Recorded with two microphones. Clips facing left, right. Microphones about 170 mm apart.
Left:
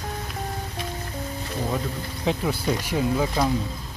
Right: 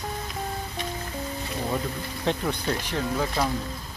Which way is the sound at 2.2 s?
5° left (ahead or behind).